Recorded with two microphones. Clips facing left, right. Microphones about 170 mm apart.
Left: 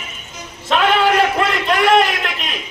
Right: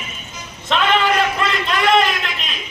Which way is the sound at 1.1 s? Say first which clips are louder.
Left 3 dB; 65° left (ahead or behind).